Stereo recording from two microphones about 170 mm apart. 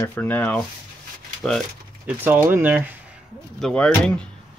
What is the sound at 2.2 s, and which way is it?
Speech, 10° right (ahead or behind).